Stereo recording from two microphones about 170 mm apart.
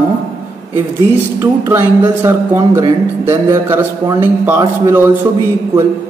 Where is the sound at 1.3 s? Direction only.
15° right (ahead or behind).